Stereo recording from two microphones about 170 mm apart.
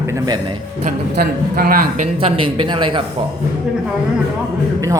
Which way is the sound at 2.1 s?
30° right (ahead or behind).